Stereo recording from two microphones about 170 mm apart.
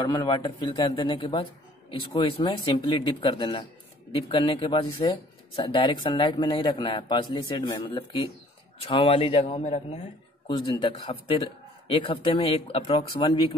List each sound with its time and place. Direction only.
0.0 s a man's voice: 25° left (ahead or behind); by 10.0 s 40° left (ahead or behind)
10.5 s a man's voice: 30° left (ahead or behind)